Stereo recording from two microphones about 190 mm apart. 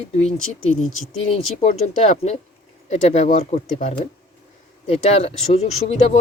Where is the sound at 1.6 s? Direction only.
40° left (ahead or behind).